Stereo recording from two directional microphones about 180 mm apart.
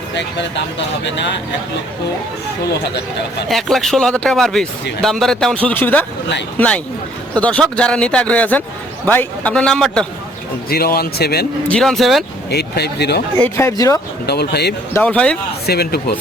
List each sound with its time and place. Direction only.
1.0 s speech: 75° left (ahead or behind)
3.5 s speech: centre (ahead or behind)
10.7 s speech: 55° left (ahead or behind)
11.7 s speech: centre (ahead or behind)
12.5 s speech: 65° left (ahead or behind)
13.4 s speech: 15° left (ahead or behind)
14.3 s speech: 65° left (ahead or behind)
14.9 s speech: 5° left (ahead or behind)
15.6 s speech: 60° left (ahead or behind)